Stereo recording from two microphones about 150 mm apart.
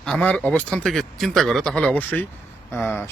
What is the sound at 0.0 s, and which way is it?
Speech, 5° left (ahead or behind).